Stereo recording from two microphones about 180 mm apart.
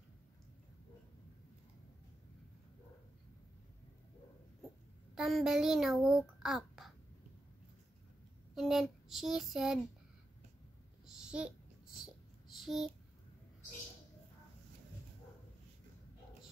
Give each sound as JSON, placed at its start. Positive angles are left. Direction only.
{"t": 5.1, "sound": "a child's voice", "side_deg": 0}
{"t": 8.5, "sound": "child singing", "side_deg": 0}
{"t": 11.1, "sound": "a sound", "side_deg": -5}
{"t": 12.5, "sound": "speech", "side_deg": 0}